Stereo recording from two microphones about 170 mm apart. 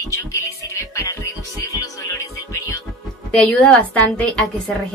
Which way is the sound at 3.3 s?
5° left (ahead or behind).